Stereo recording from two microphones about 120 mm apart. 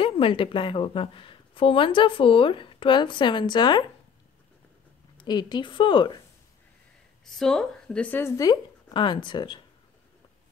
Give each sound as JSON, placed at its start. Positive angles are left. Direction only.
{"t": 0.0, "sound": "a woman's voice", "side_deg": 45}
{"t": 5.1, "sound": "speech", "side_deg": 35}
{"t": 7.2, "sound": "a woman's voice", "side_deg": 5}
{"t": 8.4, "sound": "speech", "side_deg": 35}